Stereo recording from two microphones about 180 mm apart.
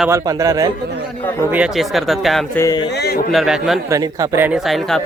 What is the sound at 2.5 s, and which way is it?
Speech, 15° left (ahead or behind).